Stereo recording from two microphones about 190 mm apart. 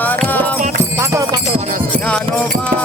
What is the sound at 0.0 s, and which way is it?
Music, 10° left (ahead or behind).